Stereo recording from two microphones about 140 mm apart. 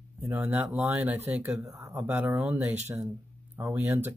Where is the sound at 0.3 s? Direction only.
15° right (ahead or behind).